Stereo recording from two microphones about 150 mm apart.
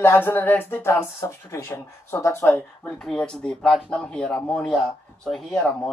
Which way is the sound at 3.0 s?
5° left (ahead or behind).